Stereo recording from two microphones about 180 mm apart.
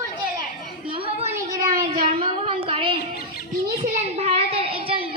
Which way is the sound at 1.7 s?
50° right (ahead or behind).